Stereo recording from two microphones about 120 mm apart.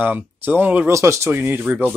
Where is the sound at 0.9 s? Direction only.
25° right (ahead or behind).